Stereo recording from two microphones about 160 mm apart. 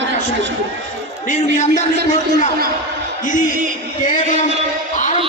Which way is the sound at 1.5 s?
50° left (ahead or behind).